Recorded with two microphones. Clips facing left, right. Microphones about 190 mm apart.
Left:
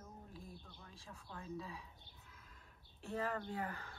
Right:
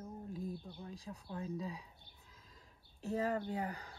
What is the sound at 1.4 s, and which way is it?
Speech, 35° right (ahead or behind).